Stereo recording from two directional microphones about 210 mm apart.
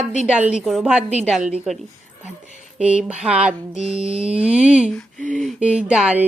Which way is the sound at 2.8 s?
5° right (ahead or behind).